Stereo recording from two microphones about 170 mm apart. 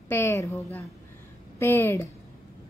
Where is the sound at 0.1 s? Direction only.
15° left (ahead or behind).